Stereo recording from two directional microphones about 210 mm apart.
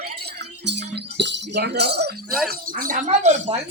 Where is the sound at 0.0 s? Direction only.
50° right (ahead or behind).